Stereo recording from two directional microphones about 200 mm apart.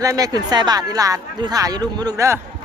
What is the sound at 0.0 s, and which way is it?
Speech, 15° right (ahead or behind).